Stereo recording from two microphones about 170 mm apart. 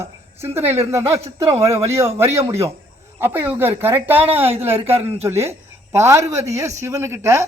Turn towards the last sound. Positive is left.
turn(degrees=-15)  # may be behind; listen again after turning